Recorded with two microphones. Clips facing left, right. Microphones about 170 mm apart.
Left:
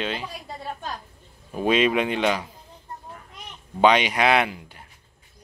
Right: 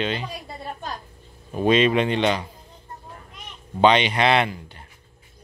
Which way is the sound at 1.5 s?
5° left (ahead or behind).